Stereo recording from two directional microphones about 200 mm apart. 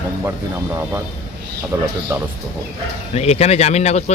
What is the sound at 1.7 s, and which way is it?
Speech, 10° right (ahead or behind).